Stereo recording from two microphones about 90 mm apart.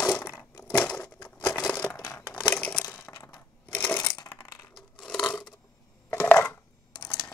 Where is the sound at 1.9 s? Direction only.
40° left (ahead or behind).